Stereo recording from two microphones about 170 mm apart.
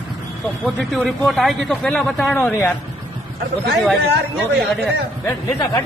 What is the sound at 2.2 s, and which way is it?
Speech, 10° left (ahead or behind).